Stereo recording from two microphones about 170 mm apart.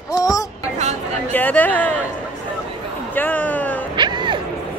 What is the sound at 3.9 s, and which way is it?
Music, 25° right (ahead or behind).